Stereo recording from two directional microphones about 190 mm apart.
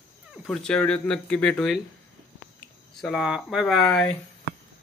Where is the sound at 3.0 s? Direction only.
Centre (ahead or behind).